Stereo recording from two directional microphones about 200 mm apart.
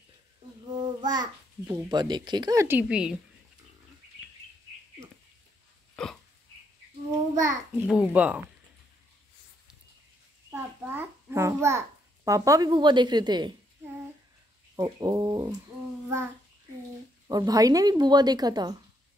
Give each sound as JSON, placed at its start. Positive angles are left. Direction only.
{"t": 0.7, "sound": "a child's voice", "side_deg": -20}
{"t": 6.0, "sound": "hiccup", "side_deg": 5}
{"t": 7.3, "sound": "a child's voice", "side_deg": -15}
{"t": 10.5, "sound": "a child's voice", "side_deg": -10}
{"t": 14.8, "sound": "a woman's voice", "side_deg": -20}
{"t": 17.3, "sound": "a woman's voice", "side_deg": -20}